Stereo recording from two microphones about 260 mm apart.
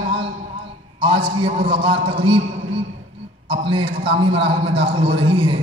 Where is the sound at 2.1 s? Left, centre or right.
Centre.